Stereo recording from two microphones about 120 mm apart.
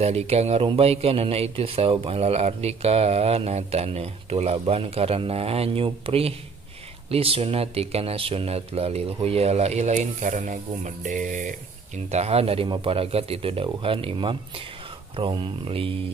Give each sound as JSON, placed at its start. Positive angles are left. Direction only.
{"t": 0.0, "sound": "a man's voice", "side_deg": -60}
{"t": 12.1, "sound": "a man's voice", "side_deg": -60}